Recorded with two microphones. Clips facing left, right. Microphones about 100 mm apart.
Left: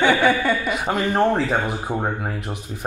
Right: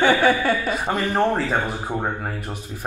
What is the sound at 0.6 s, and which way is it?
Speech, 10° left (ahead or behind).